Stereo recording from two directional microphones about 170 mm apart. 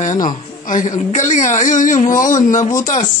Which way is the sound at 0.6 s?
50° left (ahead or behind).